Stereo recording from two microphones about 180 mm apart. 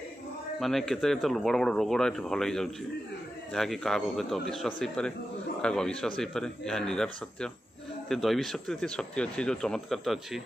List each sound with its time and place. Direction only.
0.6 s speech: centre (ahead or behind)